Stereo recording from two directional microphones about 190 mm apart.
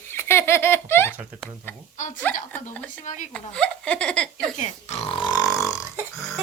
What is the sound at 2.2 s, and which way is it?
A woman's voice, 10° left (ahead or behind).